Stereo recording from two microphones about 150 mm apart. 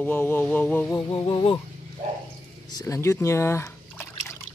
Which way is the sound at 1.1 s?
35° left (ahead or behind).